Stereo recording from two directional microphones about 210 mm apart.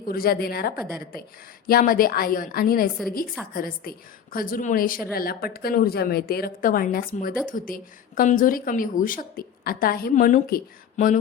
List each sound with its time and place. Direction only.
0.0 s a woman's voice: 45° left (ahead or behind)